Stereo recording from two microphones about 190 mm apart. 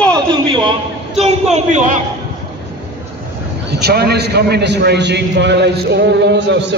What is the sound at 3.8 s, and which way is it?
A man's voice, 55° right (ahead or behind).